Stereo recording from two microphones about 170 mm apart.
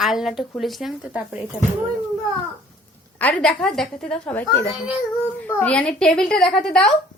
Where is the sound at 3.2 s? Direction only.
5° left (ahead or behind).